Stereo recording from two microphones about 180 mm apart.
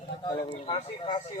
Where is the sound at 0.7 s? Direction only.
30° left (ahead or behind).